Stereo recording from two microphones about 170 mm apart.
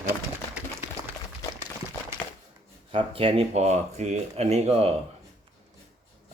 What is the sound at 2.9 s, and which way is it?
Speech, 35° right (ahead or behind).